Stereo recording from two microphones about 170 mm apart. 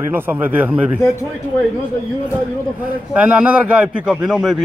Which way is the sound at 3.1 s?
5° right (ahead or behind).